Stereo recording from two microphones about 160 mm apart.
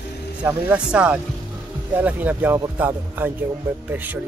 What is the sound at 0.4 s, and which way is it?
Speech, 5° right (ahead or behind).